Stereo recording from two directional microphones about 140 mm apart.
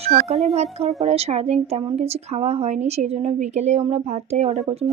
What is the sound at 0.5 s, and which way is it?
A woman's voice, 50° right (ahead or behind).